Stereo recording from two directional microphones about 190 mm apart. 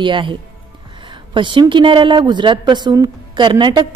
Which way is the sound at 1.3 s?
25° right (ahead or behind).